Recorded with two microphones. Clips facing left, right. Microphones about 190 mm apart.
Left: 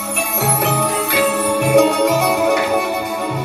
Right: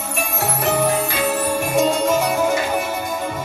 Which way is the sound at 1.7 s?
65° left (ahead or behind).